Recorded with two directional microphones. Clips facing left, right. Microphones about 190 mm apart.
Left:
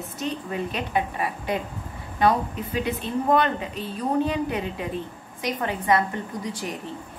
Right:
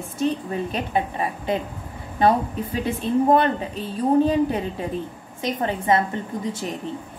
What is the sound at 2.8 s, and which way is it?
A woman's voice, 30° right (ahead or behind).